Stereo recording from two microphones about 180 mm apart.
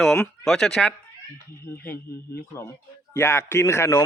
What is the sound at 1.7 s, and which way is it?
Speech, 10° left (ahead or behind).